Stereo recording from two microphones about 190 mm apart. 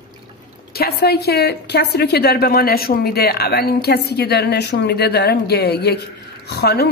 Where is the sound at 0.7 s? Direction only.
55° left (ahead or behind).